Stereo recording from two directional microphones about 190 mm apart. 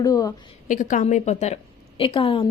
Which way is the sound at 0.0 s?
20° left (ahead or behind).